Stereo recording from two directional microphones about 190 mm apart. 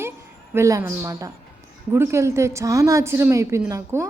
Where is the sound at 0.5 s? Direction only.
15° right (ahead or behind).